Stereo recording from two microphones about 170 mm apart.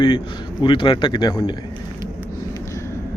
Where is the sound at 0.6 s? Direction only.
30° left (ahead or behind).